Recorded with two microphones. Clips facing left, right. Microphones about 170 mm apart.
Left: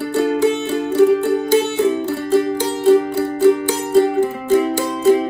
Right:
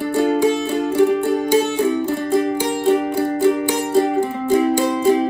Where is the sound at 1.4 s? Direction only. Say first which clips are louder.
Left 1 dB; 15° right (ahead or behind).